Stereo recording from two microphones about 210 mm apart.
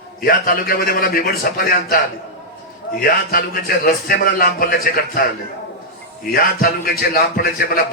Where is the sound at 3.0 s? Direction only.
45° left (ahead or behind).